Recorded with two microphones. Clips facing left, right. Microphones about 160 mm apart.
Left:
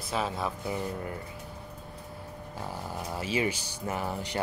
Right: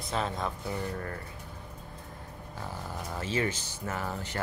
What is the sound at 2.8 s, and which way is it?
A man's voice, 10° left (ahead or behind).